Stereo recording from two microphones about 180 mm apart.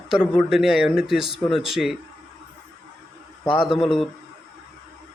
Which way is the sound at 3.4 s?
30° left (ahead or behind).